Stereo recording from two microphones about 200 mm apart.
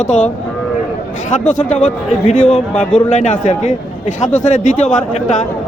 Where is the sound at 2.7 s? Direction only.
5° left (ahead or behind).